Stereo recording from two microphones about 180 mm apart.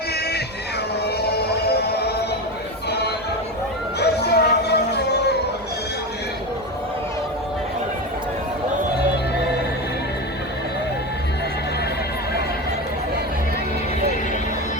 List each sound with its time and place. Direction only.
1.9 s music: 65° left (ahead or behind)
4.0 s music: 65° left (ahead or behind)